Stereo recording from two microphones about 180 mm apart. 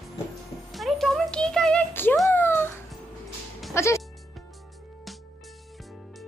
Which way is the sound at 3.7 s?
15° left (ahead or behind).